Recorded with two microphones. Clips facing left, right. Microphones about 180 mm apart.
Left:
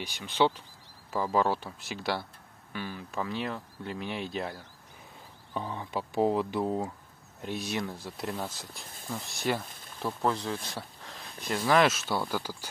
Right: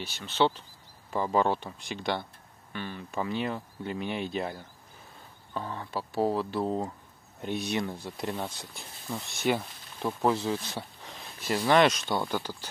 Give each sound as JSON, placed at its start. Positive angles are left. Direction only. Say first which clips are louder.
{"t": 0.0, "sound": "speech", "louder": "even", "side_deg": 15}
{"t": 5.5, "sound": "speech", "louder": "left 1 dB", "side_deg": 15}
{"t": 9.7, "sound": "a sound", "louder": "left 1 dB", "side_deg": 50}
{"t": 10.0, "sound": "speech", "louder": "right 3 dB", "side_deg": -5}